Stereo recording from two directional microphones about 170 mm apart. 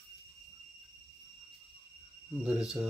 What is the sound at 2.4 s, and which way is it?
Cricket, 5° right (ahead or behind).